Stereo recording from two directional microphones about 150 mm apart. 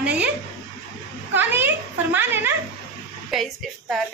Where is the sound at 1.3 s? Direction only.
15° right (ahead or behind).